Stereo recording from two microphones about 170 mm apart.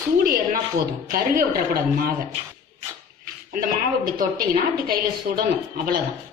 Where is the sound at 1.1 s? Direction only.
60° right (ahead or behind).